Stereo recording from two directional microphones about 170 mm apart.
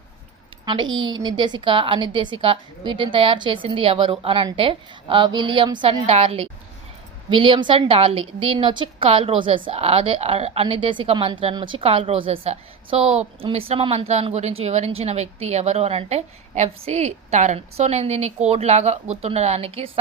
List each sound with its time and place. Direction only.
0.6 s a woman's voice: 25° right (ahead or behind)